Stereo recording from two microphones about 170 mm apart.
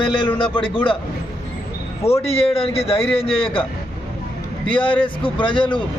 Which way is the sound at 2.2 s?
35° left (ahead or behind).